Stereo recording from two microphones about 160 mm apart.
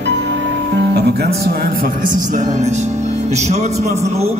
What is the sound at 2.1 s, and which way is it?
A man's voice, 50° right (ahead or behind).